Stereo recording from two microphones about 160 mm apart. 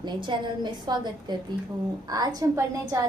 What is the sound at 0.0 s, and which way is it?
A woman's voice, 30° right (ahead or behind).